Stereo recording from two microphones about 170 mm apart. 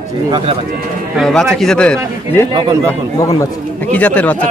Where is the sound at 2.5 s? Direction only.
25° right (ahead or behind).